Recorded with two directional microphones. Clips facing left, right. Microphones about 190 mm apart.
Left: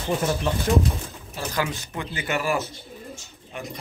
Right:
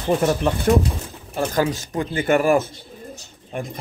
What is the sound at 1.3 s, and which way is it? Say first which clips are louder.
Speech: right 7 dB; 50° right (ahead or behind).